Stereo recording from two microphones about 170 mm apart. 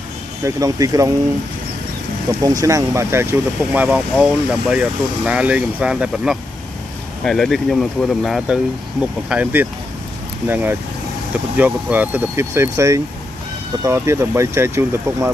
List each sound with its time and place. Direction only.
0.5 s speech: 20° right (ahead or behind)
2.4 s speech: 20° right (ahead or behind); by 8.5 s centre (ahead or behind)
9.3 s speech: 10° right (ahead or behind)